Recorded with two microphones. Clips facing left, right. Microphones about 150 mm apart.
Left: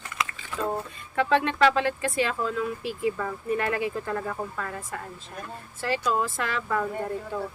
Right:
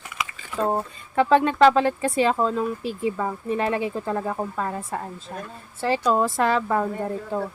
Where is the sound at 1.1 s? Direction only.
35° right (ahead or behind).